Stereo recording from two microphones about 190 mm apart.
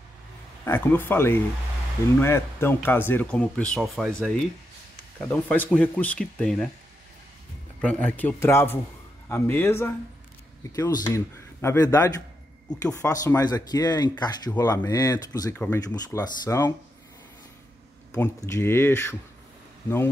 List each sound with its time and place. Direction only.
0.7 s speech: 10° left (ahead or behind)
7.8 s speech: 5° left (ahead or behind)
13.1 s speech: 20° left (ahead or behind)
18.1 s speech: 15° left (ahead or behind)